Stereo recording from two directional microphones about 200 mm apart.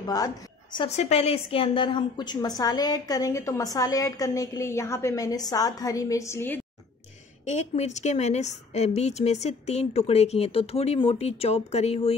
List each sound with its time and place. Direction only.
0.0 s a woman's voice: 20° left (ahead or behind)
7.4 s a woman's voice: 35° left (ahead or behind)